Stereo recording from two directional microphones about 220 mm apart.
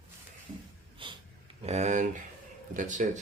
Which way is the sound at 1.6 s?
30° right (ahead or behind).